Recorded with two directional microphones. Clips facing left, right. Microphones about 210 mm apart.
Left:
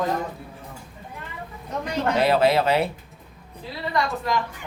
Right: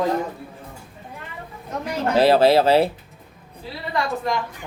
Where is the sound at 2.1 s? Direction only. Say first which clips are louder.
Right 5 dB; 30° right (ahead or behind).